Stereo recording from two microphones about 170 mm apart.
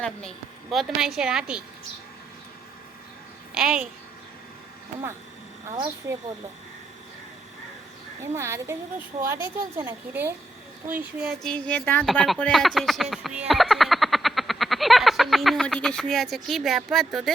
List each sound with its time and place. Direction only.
0.0 s a woman's voice: 5° left (ahead or behind)
3.5 s a woman's voice: 5° right (ahead or behind)
8.4 s a woman's voice: 15° right (ahead or behind)
11.4 s speech: 5° left (ahead or behind)